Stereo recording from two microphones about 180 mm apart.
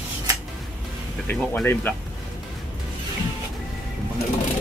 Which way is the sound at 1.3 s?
10° left (ahead or behind).